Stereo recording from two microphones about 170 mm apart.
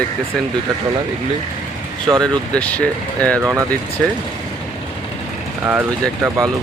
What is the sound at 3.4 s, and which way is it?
Speech, 15° right (ahead or behind).